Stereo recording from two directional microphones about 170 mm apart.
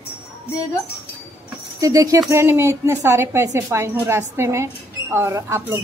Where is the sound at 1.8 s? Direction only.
20° right (ahead or behind).